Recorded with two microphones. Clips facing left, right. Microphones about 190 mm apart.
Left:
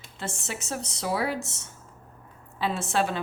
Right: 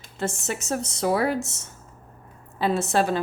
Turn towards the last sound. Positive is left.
turn(degrees=-40)  # may be behind; listen again after turning